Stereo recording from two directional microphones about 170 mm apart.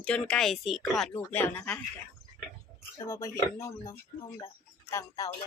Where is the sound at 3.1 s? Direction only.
20° left (ahead or behind).